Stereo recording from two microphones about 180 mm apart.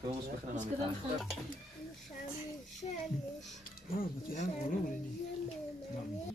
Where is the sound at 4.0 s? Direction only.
45° left (ahead or behind).